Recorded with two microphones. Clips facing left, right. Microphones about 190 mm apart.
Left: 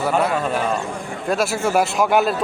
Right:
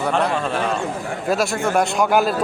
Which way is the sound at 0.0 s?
5° left (ahead or behind).